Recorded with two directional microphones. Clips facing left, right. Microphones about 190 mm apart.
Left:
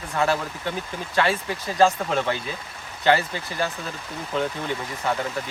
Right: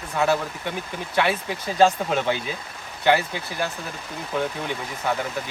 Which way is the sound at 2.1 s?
15° right (ahead or behind).